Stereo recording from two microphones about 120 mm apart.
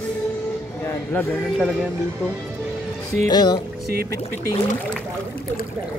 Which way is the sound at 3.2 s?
35° left (ahead or behind).